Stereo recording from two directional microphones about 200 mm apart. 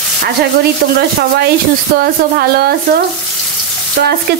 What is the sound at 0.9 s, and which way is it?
Speech, 55° right (ahead or behind).